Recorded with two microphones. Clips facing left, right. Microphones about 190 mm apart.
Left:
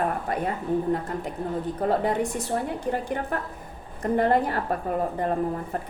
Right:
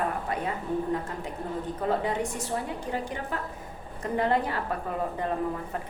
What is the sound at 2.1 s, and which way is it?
A woman's voice, 55° left (ahead or behind).